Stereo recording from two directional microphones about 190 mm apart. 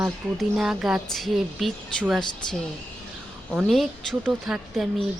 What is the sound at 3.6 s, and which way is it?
Speech, centre (ahead or behind).